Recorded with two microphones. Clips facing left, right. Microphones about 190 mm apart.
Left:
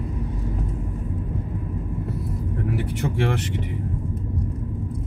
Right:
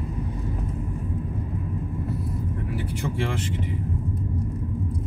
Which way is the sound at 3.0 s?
65° left (ahead or behind).